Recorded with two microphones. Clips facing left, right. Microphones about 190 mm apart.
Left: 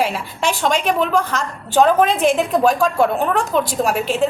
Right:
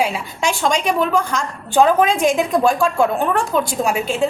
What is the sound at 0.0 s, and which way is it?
A woman's voice, centre (ahead or behind).